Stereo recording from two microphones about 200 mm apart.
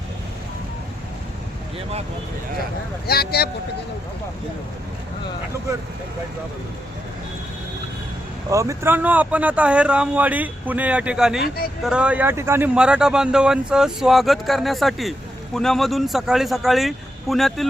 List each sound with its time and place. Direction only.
3.1 s speech: 50° left (ahead or behind)
8.4 s speech: 15° right (ahead or behind); by 17.7 s centre (ahead or behind)